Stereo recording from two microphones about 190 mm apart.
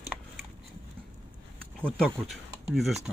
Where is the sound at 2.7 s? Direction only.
Centre (ahead or behind).